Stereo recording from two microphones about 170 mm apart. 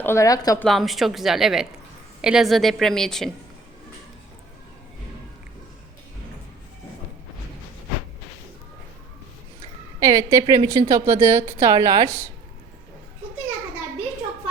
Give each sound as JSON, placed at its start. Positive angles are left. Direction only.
{"t": 0.0, "sound": "a woman's voice", "side_deg": 15}
{"t": 0.6, "sound": "a woman's voice", "side_deg": 0}
{"t": 10.0, "sound": "a woman's voice", "side_deg": -20}